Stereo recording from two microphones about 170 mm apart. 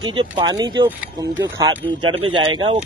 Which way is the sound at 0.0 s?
25° right (ahead or behind).